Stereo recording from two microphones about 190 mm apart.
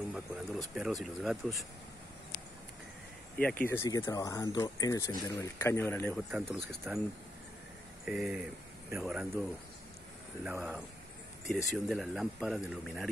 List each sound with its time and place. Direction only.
0.1 s speech: 5° right (ahead or behind)
3.3 s speech: 10° left (ahead or behind)
6.1 s speech: centre (ahead or behind)
8.0 s speech: 5° right (ahead or behind)
10.4 s speech: 10° right (ahead or behind)